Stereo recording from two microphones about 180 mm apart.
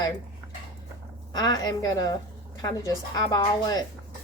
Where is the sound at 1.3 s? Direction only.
20° left (ahead or behind).